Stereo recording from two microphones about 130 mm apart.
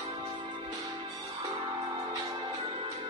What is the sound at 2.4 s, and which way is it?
Music, 40° right (ahead or behind).